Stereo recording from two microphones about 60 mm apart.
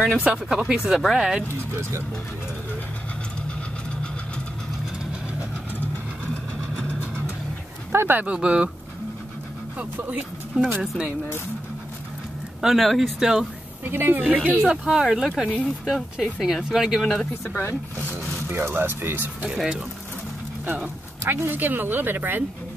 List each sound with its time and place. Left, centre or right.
0.2 s speech: centre
0.9 s speech: centre
7.9 s a sound: right
8.2 s speech: centre
9.8 s speech: right
10.8 s speech: centre
12.6 s speech: centre
13.8 s speech: right
14.9 s speech: centre
18.5 s speech: right
19.4 s speech: centre
21.2 s speech: right